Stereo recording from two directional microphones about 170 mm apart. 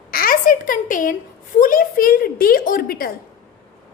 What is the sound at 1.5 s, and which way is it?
A woman's voice, 55° left (ahead or behind).